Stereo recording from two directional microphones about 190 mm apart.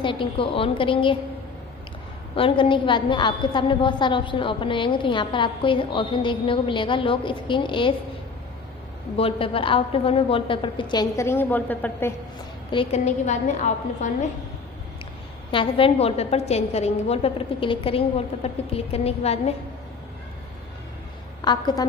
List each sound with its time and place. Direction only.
0.0 s a woman's voice: 25° left (ahead or behind)
2.3 s a woman's voice: 30° left (ahead or behind)
9.1 s a woman's voice: 30° left (ahead or behind); by 12.1 s 10° left (ahead or behind)
12.7 s a woman's voice: 35° left (ahead or behind)
15.5 s a woman's voice: 30° left (ahead or behind)
21.4 s a woman's voice: 20° left (ahead or behind)